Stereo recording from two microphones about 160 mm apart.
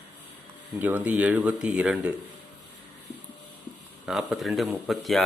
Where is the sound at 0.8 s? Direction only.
10° right (ahead or behind).